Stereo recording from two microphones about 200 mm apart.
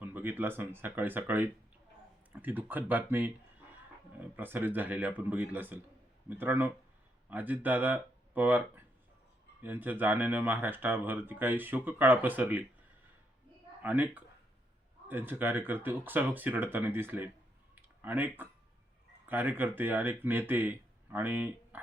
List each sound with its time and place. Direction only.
0.0 s speech: 10° right (ahead or behind)
13.8 s speech: 10° right (ahead or behind)